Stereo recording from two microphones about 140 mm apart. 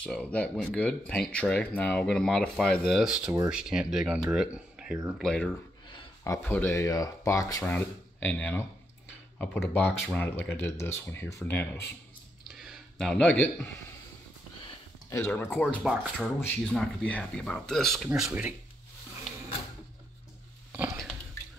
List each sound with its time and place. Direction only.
0.0 s speech: 10° left (ahead or behind)
5.2 s speech: 5° left (ahead or behind)
6.2 s speech: 20° left (ahead or behind)
7.7 s speech: 15° left (ahead or behind)
12.4 s a sound: centre (ahead or behind)
15.0 s speech: 20° left (ahead or behind)
15.8 s speech: 5° right (ahead or behind)
20.7 s biting: 15° right (ahead or behind)